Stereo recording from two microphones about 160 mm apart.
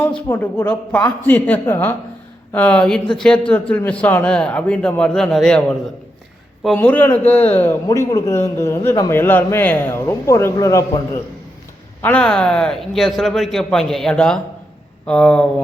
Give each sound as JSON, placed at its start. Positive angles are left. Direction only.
{"t": 0.3, "sound": "a man's voice", "side_deg": 15}
{"t": 6.7, "sound": "a man's voice", "side_deg": 10}
{"t": 12.0, "sound": "a man's voice", "side_deg": 5}